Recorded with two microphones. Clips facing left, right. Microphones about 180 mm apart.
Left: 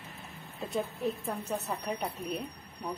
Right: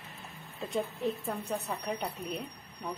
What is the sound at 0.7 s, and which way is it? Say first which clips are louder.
A woman's voice: even; centre (ahead or behind).